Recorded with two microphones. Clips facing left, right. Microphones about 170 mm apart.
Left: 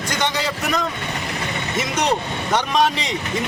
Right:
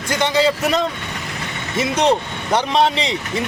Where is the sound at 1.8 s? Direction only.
30° right (ahead or behind).